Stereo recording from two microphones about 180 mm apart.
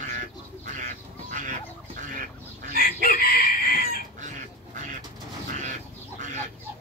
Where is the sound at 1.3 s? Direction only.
45° right (ahead or behind).